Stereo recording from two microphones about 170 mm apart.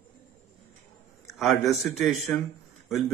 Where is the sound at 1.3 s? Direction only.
Centre (ahead or behind).